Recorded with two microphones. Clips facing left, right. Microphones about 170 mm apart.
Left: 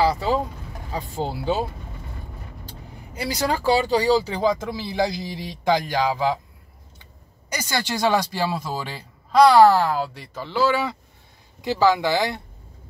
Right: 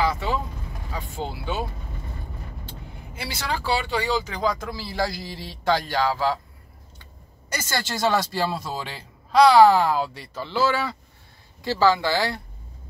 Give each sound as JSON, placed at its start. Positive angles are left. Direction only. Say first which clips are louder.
{"t": 0.0, "sound": "vehicle", "louder": "left 4 dB", "side_deg": 35}
{"t": 0.9, "sound": "speech", "louder": "left 4 dB", "side_deg": 35}
{"t": 3.2, "sound": "speech", "louder": "left 6 dB", "side_deg": 40}
{"t": 7.4, "sound": "speech", "louder": "left 2 dB", "side_deg": 15}
{"t": 9.6, "sound": "speech", "louder": "left 1 dB", "side_deg": -10}
{"t": 9.9, "sound": "speech", "louder": "even", "side_deg": 10}